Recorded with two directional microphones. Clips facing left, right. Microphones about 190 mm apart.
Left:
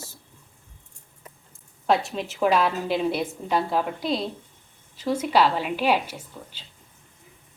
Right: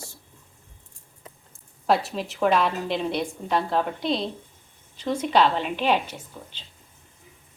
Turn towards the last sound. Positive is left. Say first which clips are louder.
# left 1 dB
turn(degrees=10)  # may be behind; listen again after turning